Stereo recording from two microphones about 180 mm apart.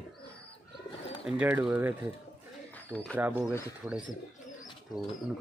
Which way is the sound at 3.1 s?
10° right (ahead or behind).